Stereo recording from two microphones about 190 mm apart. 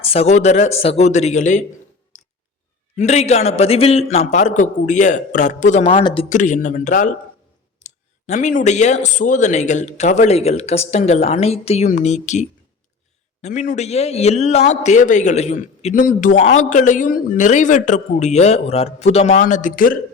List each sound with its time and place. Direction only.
0.0 s a man's voice: 30° left (ahead or behind)
2.1 s a sound: 35° left (ahead or behind)
2.9 s a man's voice: 40° left (ahead or behind)
5.8 s speech: 25° left (ahead or behind)
6.2 s a man's voice: 40° left (ahead or behind)